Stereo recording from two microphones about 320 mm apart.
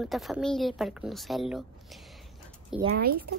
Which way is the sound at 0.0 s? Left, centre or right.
Centre.